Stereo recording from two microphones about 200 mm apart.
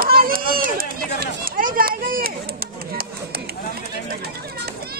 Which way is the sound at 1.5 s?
45° right (ahead or behind).